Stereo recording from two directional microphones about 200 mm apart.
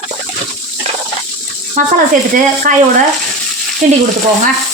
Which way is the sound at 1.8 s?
40° right (ahead or behind).